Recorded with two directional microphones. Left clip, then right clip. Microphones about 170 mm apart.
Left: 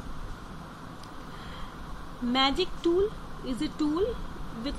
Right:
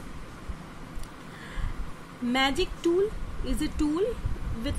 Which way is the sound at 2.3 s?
20° right (ahead or behind).